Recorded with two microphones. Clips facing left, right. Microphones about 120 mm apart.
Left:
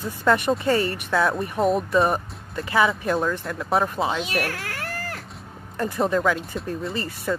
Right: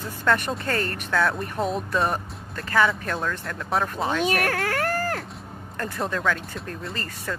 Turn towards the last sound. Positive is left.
turn(degrees=10)  # may be behind; listen again after turning